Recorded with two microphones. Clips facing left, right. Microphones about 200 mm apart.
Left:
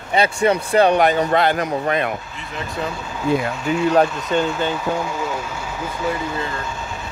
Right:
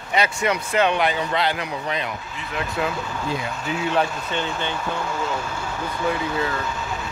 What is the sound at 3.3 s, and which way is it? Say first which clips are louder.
Speech: left 10 dB; 55° left (ahead or behind).